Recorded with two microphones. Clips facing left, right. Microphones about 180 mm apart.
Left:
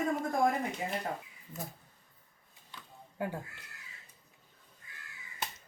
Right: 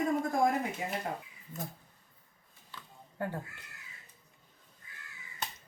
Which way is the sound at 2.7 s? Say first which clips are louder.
Even; 10° left (ahead or behind).